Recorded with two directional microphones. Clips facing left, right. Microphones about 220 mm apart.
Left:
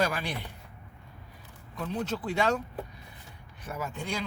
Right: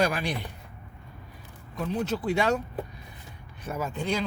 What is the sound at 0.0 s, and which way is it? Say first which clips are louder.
Speech: right 3 dB; 15° right (ahead or behind).